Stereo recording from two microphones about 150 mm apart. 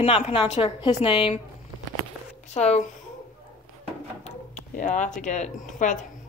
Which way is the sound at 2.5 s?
50° left (ahead or behind).